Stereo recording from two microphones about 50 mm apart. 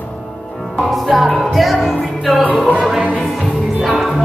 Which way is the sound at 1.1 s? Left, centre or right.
Centre.